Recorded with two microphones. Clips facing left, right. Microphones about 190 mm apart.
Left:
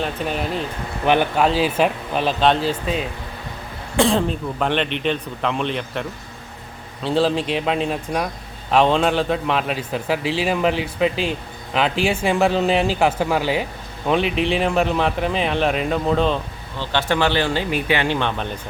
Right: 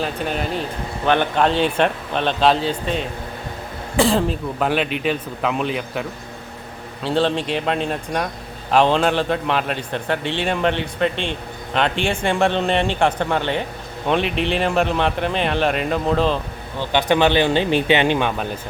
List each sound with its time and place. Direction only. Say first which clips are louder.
0.0 s a man's voice: even; centre (ahead or behind)
1.0 s a man's voice: even; 10° left (ahead or behind)
16.7 s speech: right 3 dB; 15° right (ahead or behind)